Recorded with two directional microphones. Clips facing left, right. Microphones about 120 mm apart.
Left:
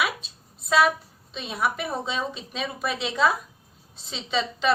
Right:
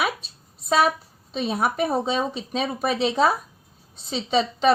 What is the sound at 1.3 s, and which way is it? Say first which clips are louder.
A woman's voice: right 4 dB; 40° right (ahead or behind).